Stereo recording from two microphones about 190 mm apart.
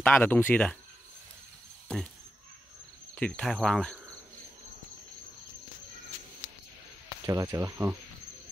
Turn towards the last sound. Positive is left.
turn(degrees=-15)  # may be behind; listen again after turning